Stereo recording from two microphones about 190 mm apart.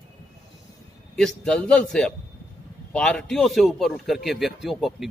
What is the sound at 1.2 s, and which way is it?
Speech, 5° left (ahead or behind).